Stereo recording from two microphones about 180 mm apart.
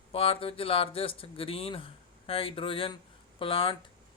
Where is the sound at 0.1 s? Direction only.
30° left (ahead or behind).